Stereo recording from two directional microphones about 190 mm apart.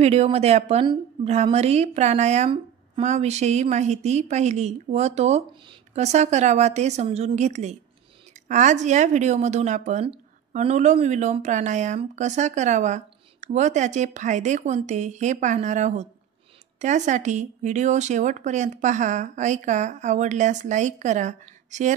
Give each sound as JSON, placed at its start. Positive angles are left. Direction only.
{"t": 0.0, "sound": "a woman's voice", "side_deg": -35}